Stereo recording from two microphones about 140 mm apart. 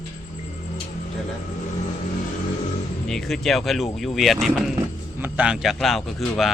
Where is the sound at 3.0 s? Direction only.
Centre (ahead or behind).